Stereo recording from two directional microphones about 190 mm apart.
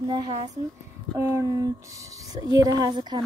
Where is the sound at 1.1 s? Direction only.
15° right (ahead or behind).